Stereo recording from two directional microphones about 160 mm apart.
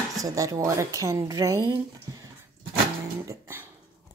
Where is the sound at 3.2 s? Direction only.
20° right (ahead or behind).